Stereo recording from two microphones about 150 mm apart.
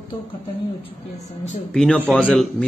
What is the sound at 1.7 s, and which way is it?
Speech, 5° left (ahead or behind).